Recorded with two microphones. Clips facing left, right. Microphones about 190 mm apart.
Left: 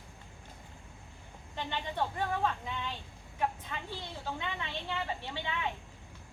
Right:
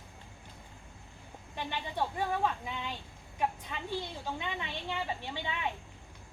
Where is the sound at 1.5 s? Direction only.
10° right (ahead or behind).